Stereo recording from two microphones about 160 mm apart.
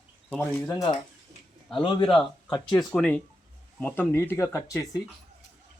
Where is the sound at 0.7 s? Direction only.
25° left (ahead or behind).